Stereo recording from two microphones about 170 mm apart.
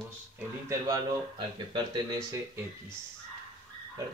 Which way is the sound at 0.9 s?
25° right (ahead or behind).